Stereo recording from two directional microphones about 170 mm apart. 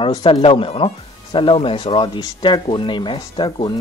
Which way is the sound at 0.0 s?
30° left (ahead or behind).